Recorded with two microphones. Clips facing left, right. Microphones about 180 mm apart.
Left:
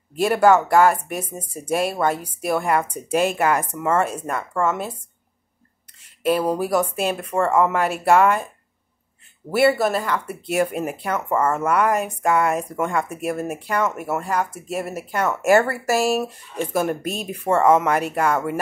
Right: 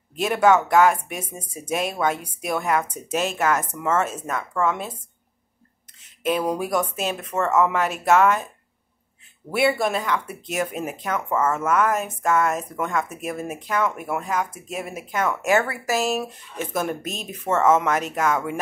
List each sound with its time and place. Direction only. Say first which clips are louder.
0.1 s speech: left 2 dB; 5° left (ahead or behind)
6.2 s speech: left 3 dB; 5° left (ahead or behind)
9.5 s speech: left 3 dB; 5° left (ahead or behind)
12.4 s speech: left 3 dB; 5° left (ahead or behind)
15.4 s speech: left 7 dB; 45° left (ahead or behind)
16.0 s speech: left 4 dB; 10° left (ahead or behind)